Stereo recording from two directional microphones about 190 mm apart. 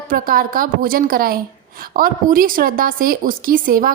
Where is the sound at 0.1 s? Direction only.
50° right (ahead or behind).